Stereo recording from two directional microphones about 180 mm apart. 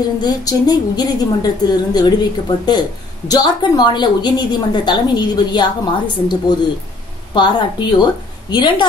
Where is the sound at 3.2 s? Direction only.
20° left (ahead or behind).